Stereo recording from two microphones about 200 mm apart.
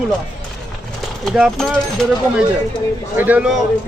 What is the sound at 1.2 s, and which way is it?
Speech, centre (ahead or behind).